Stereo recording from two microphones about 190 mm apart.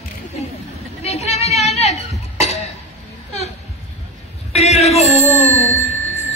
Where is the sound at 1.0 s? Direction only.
35° left (ahead or behind).